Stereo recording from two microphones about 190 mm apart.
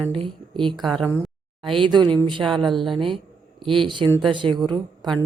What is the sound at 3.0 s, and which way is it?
Speech, 25° right (ahead or behind).